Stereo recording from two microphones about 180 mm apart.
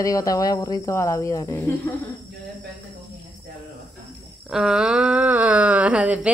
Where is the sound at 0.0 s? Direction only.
20° left (ahead or behind).